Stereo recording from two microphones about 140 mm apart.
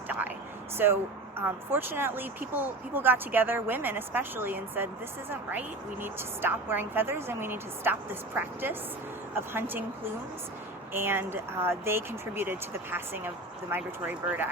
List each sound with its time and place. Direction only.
0.8 s speech: 15° right (ahead or behind)
9.3 s speech: 15° right (ahead or behind)